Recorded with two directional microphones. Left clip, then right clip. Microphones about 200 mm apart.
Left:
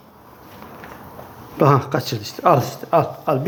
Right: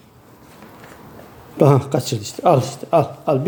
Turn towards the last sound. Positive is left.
turn(degrees=-30)  # may be behind; listen again after turning